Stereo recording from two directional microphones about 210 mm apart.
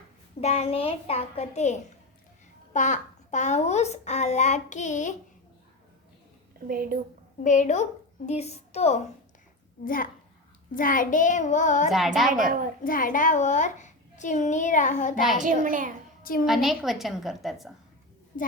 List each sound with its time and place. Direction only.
0.4 s a child's voice: 30° left (ahead or behind)
6.7 s a woman's voice: 45° right (ahead or behind)
7.4 s a child's voice: 35° left (ahead or behind)
9.8 s a child's voice: 40° left (ahead or behind)
11.9 s a woman's voice: centre (ahead or behind)
12.3 s a child's voice: 40° right (ahead or behind)
12.8 s a child's voice: 40° left (ahead or behind)
15.4 s a child's voice: 35° right (ahead or behind)
16.2 s a woman's voice: 45° left (ahead or behind)
16.5 s a woman's voice: centre (ahead or behind)